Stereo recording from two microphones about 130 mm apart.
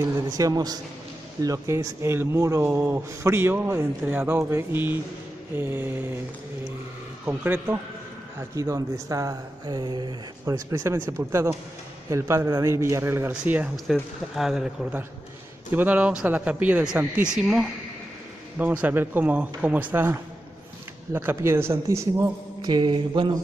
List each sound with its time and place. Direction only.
0.4 s speech: 30° right (ahead or behind)
7.2 s speech: 15° right (ahead or behind); by 10.1 s 35° right (ahead or behind)
10.4 s speech: 25° right (ahead or behind)